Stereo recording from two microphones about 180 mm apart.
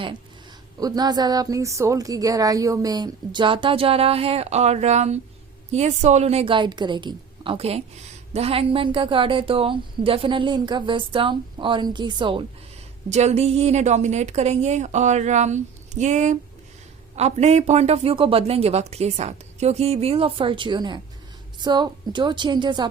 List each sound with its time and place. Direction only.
0.8 s speech: 20° right (ahead or behind)
13.1 s speech: 40° right (ahead or behind)